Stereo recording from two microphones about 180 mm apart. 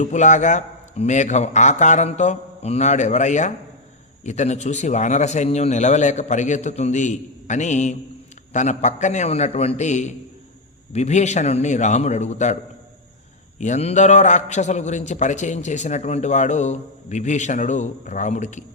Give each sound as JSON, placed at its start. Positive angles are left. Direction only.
{"t": 0.0, "sound": "a man's voice", "side_deg": 40}
{"t": 13.6, "sound": "a man's voice", "side_deg": 40}